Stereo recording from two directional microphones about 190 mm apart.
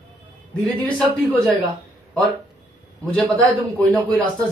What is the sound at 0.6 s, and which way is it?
Speech, 5° left (ahead or behind).